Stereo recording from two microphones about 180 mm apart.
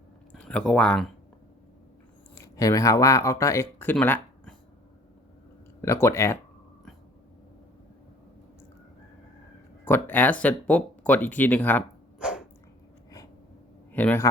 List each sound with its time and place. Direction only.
0.3 s speech: 5° left (ahead or behind)
2.3 s speech: 20° left (ahead or behind)
5.8 s speech: 15° left (ahead or behind)
9.8 s speech: 10° left (ahead or behind)
12.2 s dog: 5° right (ahead or behind)
13.9 s speech: 10° left (ahead or behind)